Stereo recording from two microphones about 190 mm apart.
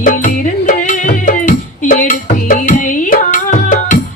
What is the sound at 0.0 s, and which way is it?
Music, 45° left (ahead or behind).